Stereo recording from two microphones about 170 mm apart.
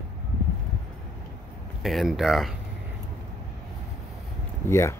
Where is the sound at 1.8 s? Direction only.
Centre (ahead or behind).